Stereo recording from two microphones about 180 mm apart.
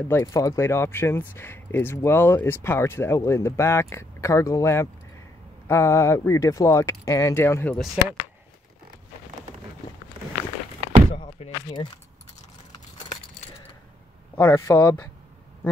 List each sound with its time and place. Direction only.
0.1 s speech: 20° left (ahead or behind); by 8.2 s centre (ahead or behind)
11.1 s slam: 35° left (ahead or behind)
14.3 s a man's voice: 20° left (ahead or behind)